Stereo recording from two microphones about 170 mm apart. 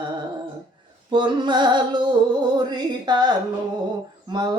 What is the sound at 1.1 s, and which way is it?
Music, 25° right (ahead or behind).